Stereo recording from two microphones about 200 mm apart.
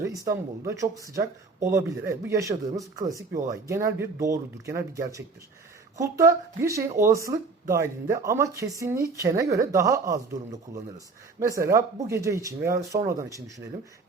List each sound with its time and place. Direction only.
0.0 s speech: 15° right (ahead or behind)